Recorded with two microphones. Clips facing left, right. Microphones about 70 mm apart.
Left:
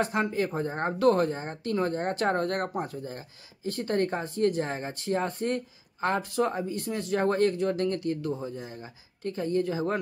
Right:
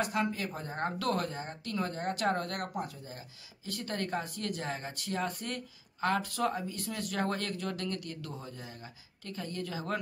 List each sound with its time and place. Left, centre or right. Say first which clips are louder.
0.0 s speech: left 5 dB; left